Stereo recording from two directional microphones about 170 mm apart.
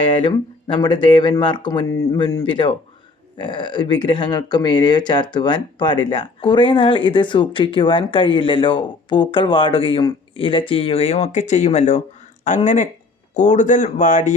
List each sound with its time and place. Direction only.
0.0 s speech: 30° left (ahead or behind); by 14.3 s 45° left (ahead or behind)